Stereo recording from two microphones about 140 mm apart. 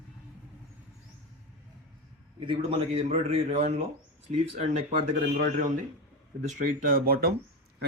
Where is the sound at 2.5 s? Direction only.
40° right (ahead or behind).